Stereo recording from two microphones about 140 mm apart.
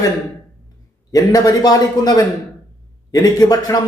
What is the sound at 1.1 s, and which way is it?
Speech, 25° left (ahead or behind).